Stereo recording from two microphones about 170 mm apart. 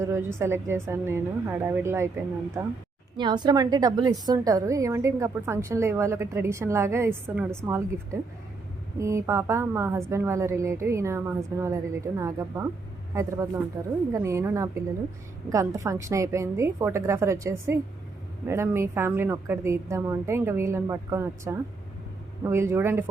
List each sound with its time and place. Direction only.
0.0 s a woman's voice: 15° right (ahead or behind)
3.2 s a woman's voice: 25° right (ahead or behind)